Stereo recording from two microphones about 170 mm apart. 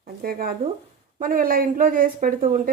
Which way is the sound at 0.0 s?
60° right (ahead or behind).